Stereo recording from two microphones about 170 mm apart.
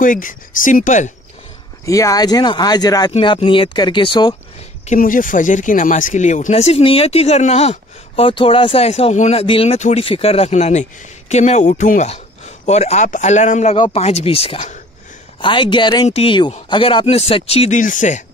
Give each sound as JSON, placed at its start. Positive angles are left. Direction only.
{"t": 0.0, "sound": "speech", "side_deg": 50}
{"t": 1.9, "sound": "speech", "side_deg": 20}
{"t": 3.1, "sound": "speech", "side_deg": 35}
{"t": 4.8, "sound": "speech", "side_deg": 50}
{"t": 15.4, "sound": "speech", "side_deg": 30}